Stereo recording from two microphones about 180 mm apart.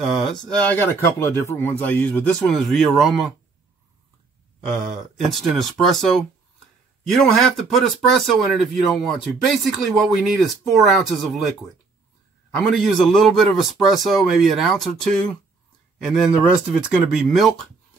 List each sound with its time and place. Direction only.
0.0 s speech: centre (ahead or behind)
5.2 s a man's voice: centre (ahead or behind)
12.4 s a man's voice: centre (ahead or behind)